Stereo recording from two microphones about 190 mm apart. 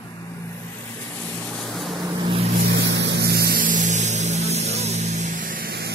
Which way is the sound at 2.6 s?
65° right (ahead or behind).